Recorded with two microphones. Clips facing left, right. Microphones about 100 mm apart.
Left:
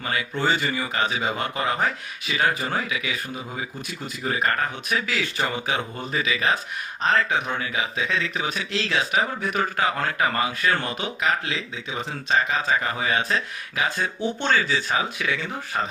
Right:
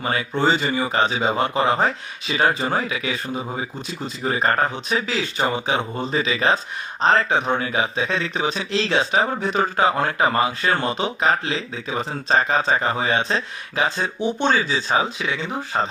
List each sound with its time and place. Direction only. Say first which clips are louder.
0.0 s speech: right 4 dB; 30° right (ahead or behind)